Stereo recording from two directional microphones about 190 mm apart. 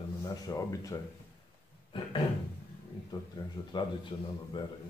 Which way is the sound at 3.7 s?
25° left (ahead or behind).